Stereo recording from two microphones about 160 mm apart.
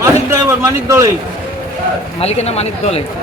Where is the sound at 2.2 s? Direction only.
40° left (ahead or behind).